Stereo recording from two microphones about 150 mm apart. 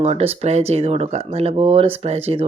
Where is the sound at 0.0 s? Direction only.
40° right (ahead or behind).